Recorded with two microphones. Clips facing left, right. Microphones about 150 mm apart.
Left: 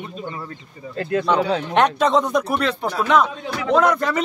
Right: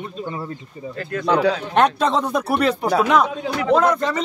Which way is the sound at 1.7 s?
Centre (ahead or behind).